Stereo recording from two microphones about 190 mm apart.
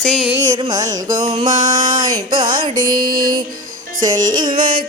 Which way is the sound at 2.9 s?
50° right (ahead or behind).